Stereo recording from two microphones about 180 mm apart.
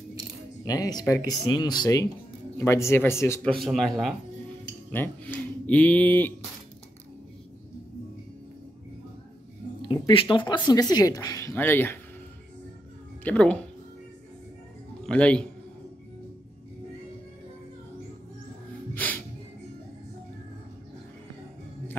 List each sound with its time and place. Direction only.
0.7 s speech: 20° left (ahead or behind)
3.5 s speech: centre (ahead or behind)
4.9 s speech: 10° left (ahead or behind)
9.8 s speech: 25° left (ahead or behind)
13.2 s speech: 5° left (ahead or behind)
15.0 s speech: 5° left (ahead or behind)
18.9 s music: 10° left (ahead or behind)